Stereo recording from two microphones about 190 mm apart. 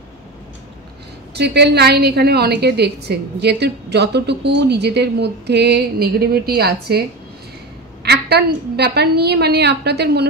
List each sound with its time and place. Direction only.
1.3 s a woman's voice: 60° right (ahead or behind)